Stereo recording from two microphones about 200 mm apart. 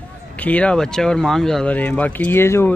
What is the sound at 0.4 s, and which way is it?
Speech, 5° left (ahead or behind).